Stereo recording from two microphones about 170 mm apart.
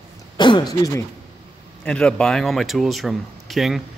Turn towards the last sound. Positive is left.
turn(degrees=0)  # may be behind; listen again after turning